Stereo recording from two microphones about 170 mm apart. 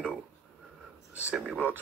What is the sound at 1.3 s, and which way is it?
Speech, 10° right (ahead or behind).